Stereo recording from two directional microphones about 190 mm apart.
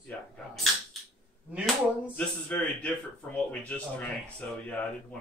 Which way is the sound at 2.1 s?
5° left (ahead or behind).